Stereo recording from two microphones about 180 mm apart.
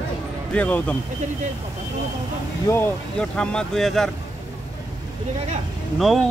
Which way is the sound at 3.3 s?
5° left (ahead or behind).